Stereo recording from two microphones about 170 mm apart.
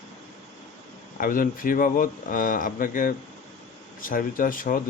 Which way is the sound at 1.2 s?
55° left (ahead or behind).